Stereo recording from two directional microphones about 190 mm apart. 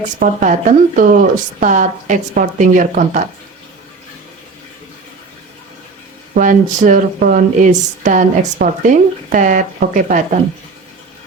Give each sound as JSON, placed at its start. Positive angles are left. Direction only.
{"t": 0.2, "sound": "speech", "side_deg": -45}
{"t": 6.3, "sound": "speech", "side_deg": -45}